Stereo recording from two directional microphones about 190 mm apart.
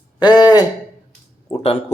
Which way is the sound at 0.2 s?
20° left (ahead or behind).